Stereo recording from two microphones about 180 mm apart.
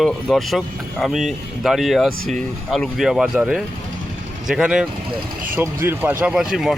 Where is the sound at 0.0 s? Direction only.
Centre (ahead or behind).